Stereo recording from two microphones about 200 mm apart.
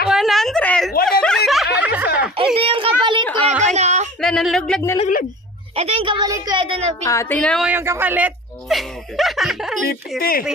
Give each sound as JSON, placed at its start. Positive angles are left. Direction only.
{"t": 0.1, "sound": "a sound", "side_deg": 0}
{"t": 1.2, "sound": "snicker", "side_deg": 0}
{"t": 2.3, "sound": "a sound", "side_deg": -25}
{"t": 3.4, "sound": "a sound", "side_deg": -35}
{"t": 4.2, "sound": "speech", "side_deg": 0}
{"t": 5.8, "sound": "a woman's voice", "side_deg": -30}
{"t": 7.1, "sound": "a woman's voice", "side_deg": 10}
{"t": 7.6, "sound": "speech", "side_deg": -10}
{"t": 9.8, "sound": "speech", "side_deg": 50}